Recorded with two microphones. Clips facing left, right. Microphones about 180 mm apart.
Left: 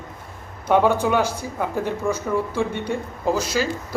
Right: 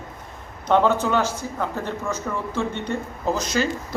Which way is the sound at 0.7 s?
10° left (ahead or behind).